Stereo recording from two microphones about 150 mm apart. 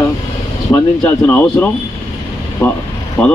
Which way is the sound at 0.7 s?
20° left (ahead or behind).